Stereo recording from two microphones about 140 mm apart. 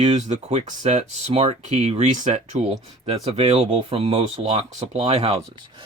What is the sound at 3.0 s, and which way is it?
Speech, 45° right (ahead or behind).